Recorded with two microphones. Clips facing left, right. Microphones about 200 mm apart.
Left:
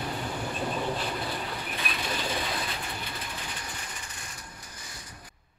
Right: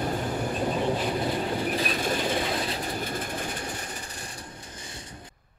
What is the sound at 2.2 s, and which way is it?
Train, 25° right (ahead or behind).